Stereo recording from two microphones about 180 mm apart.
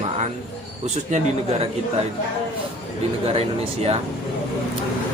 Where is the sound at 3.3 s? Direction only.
35° right (ahead or behind).